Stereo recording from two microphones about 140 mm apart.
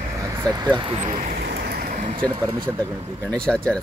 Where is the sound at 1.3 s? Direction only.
90° right; by 2.1 s 70° right (ahead or behind).